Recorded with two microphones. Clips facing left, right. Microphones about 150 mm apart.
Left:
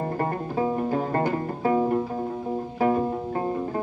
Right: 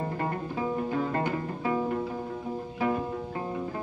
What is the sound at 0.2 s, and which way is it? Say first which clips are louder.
Music: left 7 dB; 40° left (ahead or behind).